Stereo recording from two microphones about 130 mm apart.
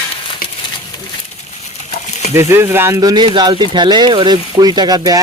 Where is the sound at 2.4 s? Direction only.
20° right (ahead or behind).